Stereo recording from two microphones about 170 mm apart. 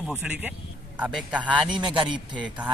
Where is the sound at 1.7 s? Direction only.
30° right (ahead or behind).